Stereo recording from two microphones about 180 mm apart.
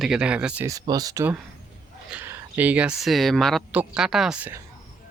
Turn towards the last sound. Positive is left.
turn(degrees=-10)  # may be behind; listen again after turning